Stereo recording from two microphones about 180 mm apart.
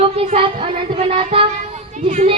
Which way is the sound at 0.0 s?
30° right (ahead or behind).